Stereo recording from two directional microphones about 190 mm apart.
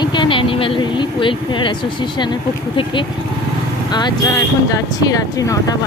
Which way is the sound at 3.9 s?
25° left (ahead or behind).